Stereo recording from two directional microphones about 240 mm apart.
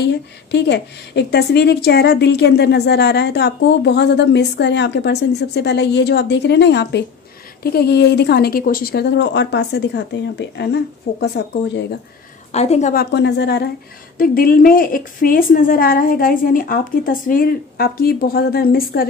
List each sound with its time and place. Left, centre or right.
0.0 s a woman's voice: left
12.5 s a woman's voice: left